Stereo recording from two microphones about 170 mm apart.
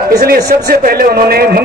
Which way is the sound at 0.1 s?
65° right (ahead or behind).